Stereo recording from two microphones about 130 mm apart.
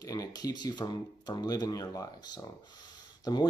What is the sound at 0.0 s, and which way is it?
Speech, 30° left (ahead or behind).